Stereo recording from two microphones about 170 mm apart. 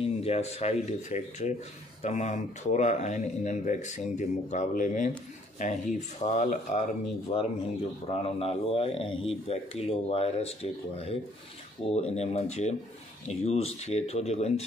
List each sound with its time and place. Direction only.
0.0 s speech: 35° left (ahead or behind)